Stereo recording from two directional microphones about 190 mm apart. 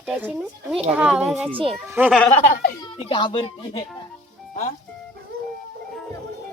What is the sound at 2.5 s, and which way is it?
Speech, 50° left (ahead or behind).